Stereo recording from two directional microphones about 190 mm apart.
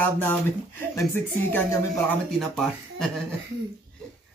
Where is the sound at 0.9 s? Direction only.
10° left (ahead or behind).